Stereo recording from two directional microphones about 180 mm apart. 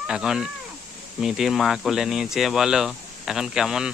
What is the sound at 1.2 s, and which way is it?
Speech, centre (ahead or behind).